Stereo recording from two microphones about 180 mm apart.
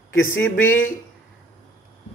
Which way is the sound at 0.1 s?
90° left.